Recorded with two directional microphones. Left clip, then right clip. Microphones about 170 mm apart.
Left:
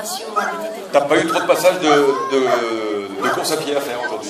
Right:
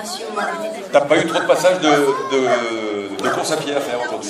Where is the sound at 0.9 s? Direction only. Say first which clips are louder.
Even; 20° right (ahead or behind).